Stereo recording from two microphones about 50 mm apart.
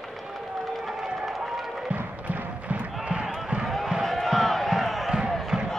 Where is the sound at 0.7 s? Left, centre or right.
Centre.